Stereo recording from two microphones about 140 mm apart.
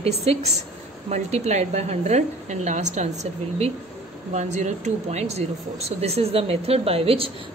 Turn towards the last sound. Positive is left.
turn(degrees=-40)  # may be behind; listen again after turning